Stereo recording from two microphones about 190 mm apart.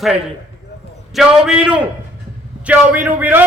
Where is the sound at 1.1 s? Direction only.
5° right (ahead or behind).